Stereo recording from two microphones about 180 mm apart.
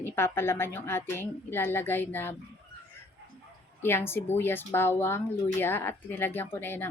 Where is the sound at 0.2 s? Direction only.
15° left (ahead or behind).